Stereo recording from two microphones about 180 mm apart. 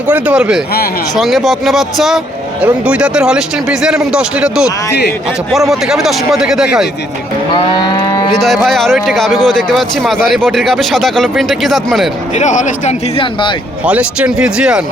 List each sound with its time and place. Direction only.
0.1 s speech: 5° right (ahead or behind)
7.5 s a sound: 25° left (ahead or behind)
8.3 s speech: centre (ahead or behind)
12.4 s speech: 45° left (ahead or behind)
13.8 s speech: 5° right (ahead or behind)